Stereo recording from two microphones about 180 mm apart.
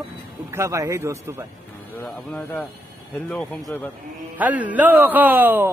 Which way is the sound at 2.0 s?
10° left (ahead or behind).